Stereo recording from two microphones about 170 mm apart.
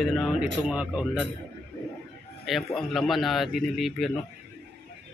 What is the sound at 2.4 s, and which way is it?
A man's voice, centre (ahead or behind).